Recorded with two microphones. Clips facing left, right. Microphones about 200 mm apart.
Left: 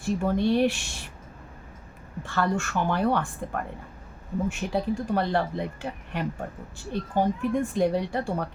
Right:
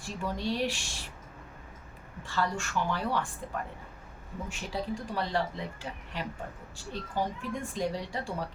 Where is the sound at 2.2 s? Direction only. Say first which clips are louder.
Left 5 dB; 55° left (ahead or behind).